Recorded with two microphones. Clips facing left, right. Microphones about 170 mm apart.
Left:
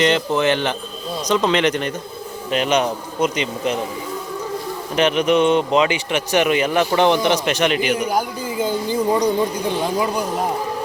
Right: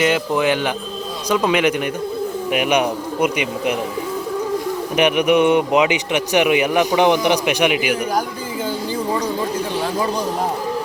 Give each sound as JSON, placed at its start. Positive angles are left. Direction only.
{"t": 0.0, "sound": "a man's voice", "side_deg": -10}
{"t": 4.9, "sound": "a man's voice", "side_deg": -15}
{"t": 8.6, "sound": "speech", "side_deg": 15}